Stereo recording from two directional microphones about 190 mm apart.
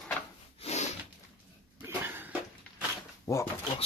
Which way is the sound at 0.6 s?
35° left (ahead or behind).